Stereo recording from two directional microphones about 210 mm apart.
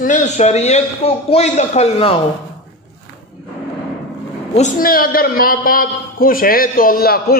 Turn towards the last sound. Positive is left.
turn(degrees=45)  # may be behind; listen again after turning